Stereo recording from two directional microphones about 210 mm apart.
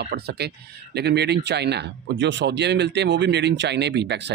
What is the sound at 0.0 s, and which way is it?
Speech, 50° right (ahead or behind).